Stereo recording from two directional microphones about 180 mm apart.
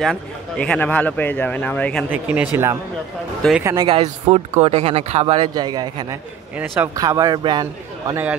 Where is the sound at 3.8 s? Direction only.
30° right (ahead or behind).